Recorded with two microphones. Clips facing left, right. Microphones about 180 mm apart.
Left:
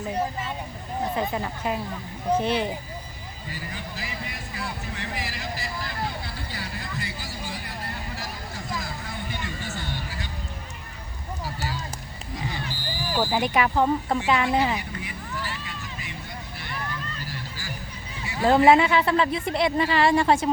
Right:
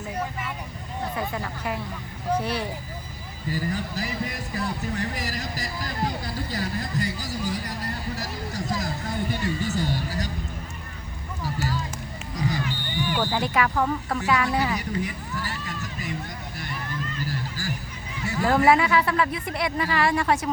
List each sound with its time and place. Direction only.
0.1 s speech: 30° left (ahead or behind)
3.5 s speech: 40° right (ahead or behind)
8.1 s a sound: 40° right (ahead or behind)
12.6 s music: 35° left (ahead or behind)
13.2 s speech: 15° left (ahead or behind)
14.8 s a sound: 40° right (ahead or behind)
18.4 s speech: 25° left (ahead or behind)